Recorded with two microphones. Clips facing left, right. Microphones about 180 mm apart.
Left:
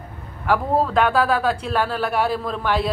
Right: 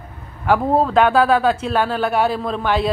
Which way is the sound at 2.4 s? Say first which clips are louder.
Right 3 dB; 25° right (ahead or behind).